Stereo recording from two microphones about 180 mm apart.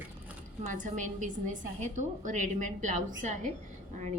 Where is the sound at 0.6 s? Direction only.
45° right (ahead or behind).